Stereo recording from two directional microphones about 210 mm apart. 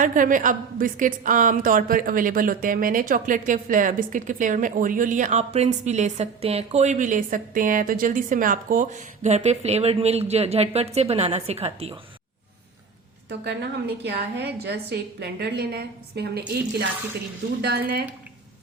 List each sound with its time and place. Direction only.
0.0 s a woman's voice: 40° right (ahead or behind)
13.4 s a woman's voice: 50° right (ahead or behind)
17.6 s a woman's voice: 50° right (ahead or behind)